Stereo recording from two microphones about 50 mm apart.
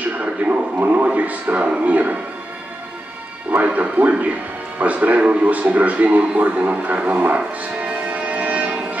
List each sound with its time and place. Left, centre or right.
0.0 s a sound: right
1.0 s speech: right
3.5 s speech: right
7.0 s music: right